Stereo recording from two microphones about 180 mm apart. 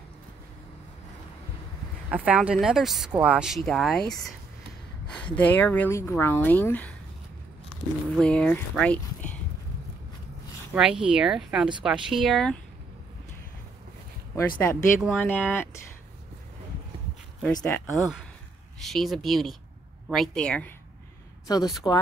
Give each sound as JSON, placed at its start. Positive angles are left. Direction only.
{"t": 2.0, "sound": "speech", "side_deg": -5}
{"t": 5.3, "sound": "speech", "side_deg": 10}
{"t": 8.2, "sound": "speech", "side_deg": 5}
{"t": 10.7, "sound": "speech", "side_deg": -5}
{"t": 14.3, "sound": "speech", "side_deg": 15}
{"t": 17.6, "sound": "speech", "side_deg": 5}
{"t": 21.5, "sound": "speech", "side_deg": 20}